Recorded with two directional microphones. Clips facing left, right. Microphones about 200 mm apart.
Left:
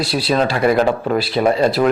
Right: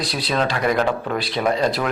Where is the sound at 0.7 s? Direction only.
30° left (ahead or behind).